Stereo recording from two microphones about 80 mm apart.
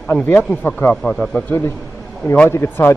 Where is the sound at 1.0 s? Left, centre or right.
Centre.